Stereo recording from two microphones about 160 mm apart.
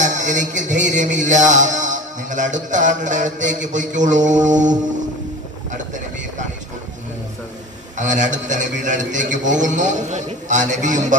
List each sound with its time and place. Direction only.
0.0 s music: 50° right (ahead or behind)
8.0 s music: 50° right (ahead or behind)